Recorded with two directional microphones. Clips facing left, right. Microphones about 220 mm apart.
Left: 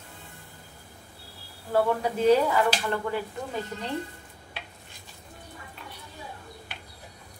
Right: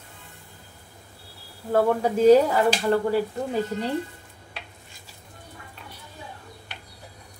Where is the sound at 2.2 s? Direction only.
40° right (ahead or behind).